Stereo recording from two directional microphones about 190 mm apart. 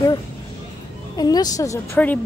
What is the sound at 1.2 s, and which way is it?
Speech, 20° left (ahead or behind).